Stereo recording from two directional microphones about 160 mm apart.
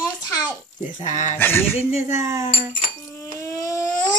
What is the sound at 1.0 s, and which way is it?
Speech, 50° left (ahead or behind).